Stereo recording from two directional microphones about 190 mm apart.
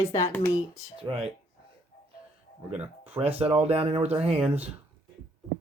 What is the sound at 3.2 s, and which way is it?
Speech, 30° right (ahead or behind).